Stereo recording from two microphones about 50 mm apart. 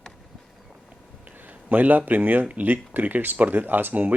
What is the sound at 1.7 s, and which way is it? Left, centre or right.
Speech, right.